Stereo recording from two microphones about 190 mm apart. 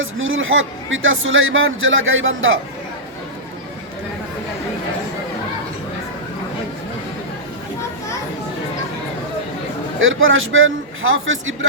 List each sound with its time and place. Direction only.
0.0 s speech: 90° right
10.0 s speech: 90° right